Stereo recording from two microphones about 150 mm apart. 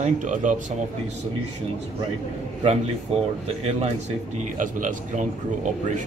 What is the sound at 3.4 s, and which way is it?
Speech, 45° right (ahead or behind).